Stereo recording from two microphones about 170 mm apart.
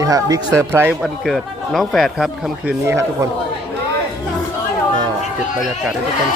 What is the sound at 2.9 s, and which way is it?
Speech, 15° right (ahead or behind).